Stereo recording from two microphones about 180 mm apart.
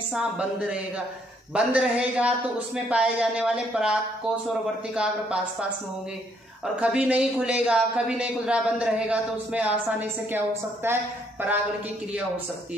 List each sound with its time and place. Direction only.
0.1 s speech: 5° right (ahead or behind)